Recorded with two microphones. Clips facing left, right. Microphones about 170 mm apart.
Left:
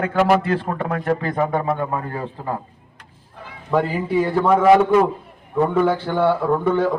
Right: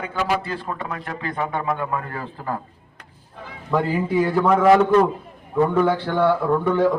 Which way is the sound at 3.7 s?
15° left (ahead or behind).